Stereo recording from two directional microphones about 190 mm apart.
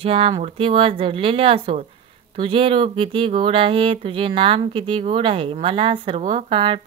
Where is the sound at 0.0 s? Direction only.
30° right (ahead or behind).